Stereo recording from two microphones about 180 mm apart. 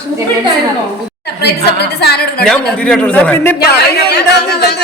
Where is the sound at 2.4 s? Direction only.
5° left (ahead or behind).